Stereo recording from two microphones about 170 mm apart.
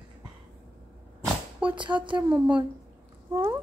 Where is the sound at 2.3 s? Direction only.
10° right (ahead or behind).